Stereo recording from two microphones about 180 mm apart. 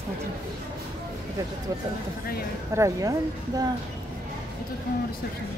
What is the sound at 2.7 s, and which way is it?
Speech, 15° right (ahead or behind).